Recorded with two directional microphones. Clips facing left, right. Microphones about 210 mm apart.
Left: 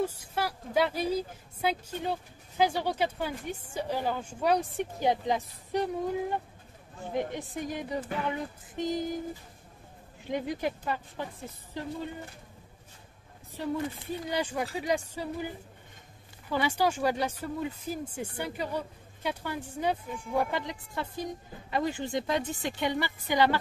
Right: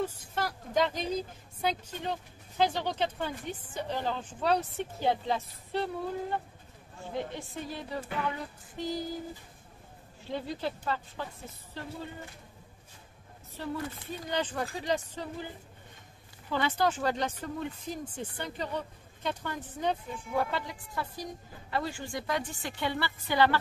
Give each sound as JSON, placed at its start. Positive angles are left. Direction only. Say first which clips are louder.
{"t": 0.0, "sound": "speech", "louder": "left 2 dB", "side_deg": 10}
{"t": 8.3, "sound": "music", "louder": "left 3 dB", "side_deg": 20}
{"t": 10.2, "sound": "speech", "louder": "left 3 dB", "side_deg": 15}
{"t": 13.6, "sound": "speech", "louder": "left 4 dB", "side_deg": 15}